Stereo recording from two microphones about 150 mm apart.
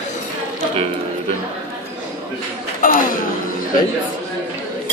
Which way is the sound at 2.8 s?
65° left (ahead or behind).